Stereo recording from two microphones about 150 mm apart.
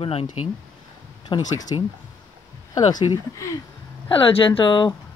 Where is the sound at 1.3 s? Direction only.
25° left (ahead or behind).